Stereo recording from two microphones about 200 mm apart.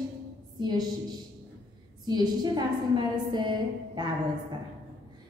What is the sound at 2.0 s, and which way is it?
A woman's voice, 20° right (ahead or behind).